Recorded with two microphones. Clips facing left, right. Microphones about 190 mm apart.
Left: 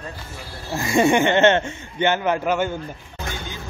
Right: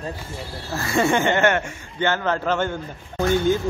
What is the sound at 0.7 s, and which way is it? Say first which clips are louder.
Speech: left 3 dB; 15° left (ahead or behind).